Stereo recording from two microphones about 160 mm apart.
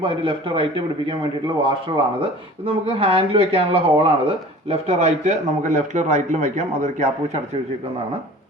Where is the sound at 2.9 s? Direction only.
35° right (ahead or behind).